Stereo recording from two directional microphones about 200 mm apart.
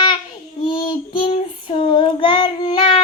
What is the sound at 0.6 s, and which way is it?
Child singing, 25° left (ahead or behind).